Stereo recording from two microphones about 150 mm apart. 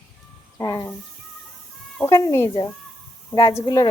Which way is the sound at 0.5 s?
25° left (ahead or behind).